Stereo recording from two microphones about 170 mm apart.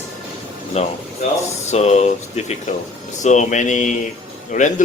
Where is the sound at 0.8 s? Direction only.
40° left (ahead or behind).